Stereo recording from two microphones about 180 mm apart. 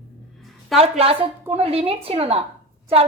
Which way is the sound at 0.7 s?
35° right (ahead or behind).